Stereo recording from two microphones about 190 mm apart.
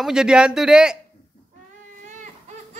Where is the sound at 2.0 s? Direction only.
40° right (ahead or behind).